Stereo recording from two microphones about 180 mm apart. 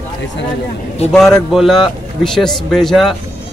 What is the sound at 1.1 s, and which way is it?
A man's voice, 5° left (ahead or behind).